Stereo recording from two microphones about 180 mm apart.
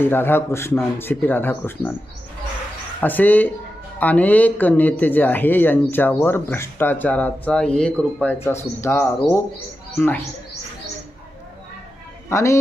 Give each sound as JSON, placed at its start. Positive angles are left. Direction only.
{"t": 0.0, "sound": "speech", "side_deg": 10}
{"t": 3.0, "sound": "speech", "side_deg": 10}
{"t": 12.3, "sound": "speech", "side_deg": 15}